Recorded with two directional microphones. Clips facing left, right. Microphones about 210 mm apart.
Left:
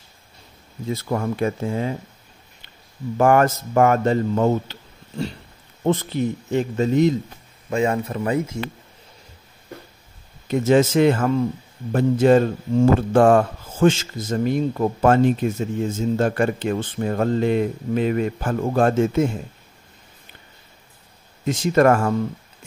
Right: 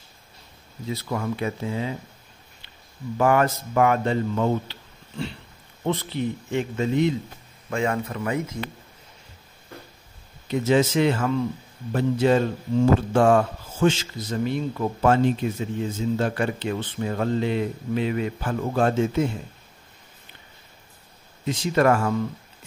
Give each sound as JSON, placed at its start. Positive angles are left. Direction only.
{"t": 0.8, "sound": "speech", "side_deg": 45}
{"t": 3.2, "sound": "speech", "side_deg": 50}
{"t": 7.7, "sound": "speech", "side_deg": 25}
{"t": 10.5, "sound": "speech", "side_deg": 50}
{"t": 21.5, "sound": "speech", "side_deg": 50}